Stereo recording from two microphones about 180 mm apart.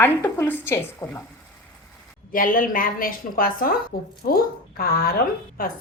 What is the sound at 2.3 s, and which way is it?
A woman's voice, 50° left (ahead or behind).